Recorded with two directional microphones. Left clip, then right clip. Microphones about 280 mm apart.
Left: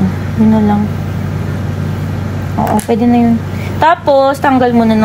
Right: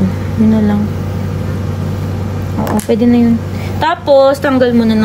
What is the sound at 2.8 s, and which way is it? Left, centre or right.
A woman's voice, centre.